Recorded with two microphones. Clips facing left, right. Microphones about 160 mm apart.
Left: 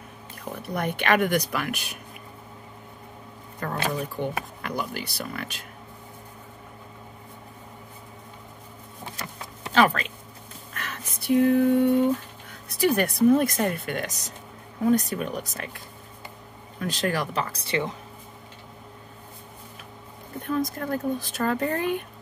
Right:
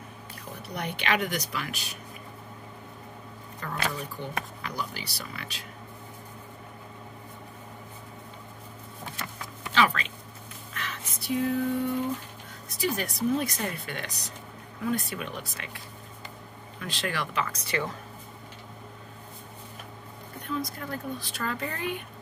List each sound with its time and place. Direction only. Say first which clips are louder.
0.5 s speech: left 6 dB; 50° left (ahead or behind)
3.5 s speech: left 5 dB; 45° left (ahead or behind)
4.2 s speech: left 5 dB; 60° left (ahead or behind)
9.2 s chopping: left 1 dB; 25° left (ahead or behind)
9.7 s speech: left 4 dB; 45° left (ahead or behind)
10.7 s music: left 1 dB; 50° left (ahead or behind)
12.7 s speech: left 8 dB; 65° left (ahead or behind); by 15.8 s 45° left (ahead or behind)
16.8 s speech: left 6 dB; 40° left (ahead or behind); by 17.9 s 25° left (ahead or behind)
20.4 s speech: left 6 dB; 50° left (ahead or behind)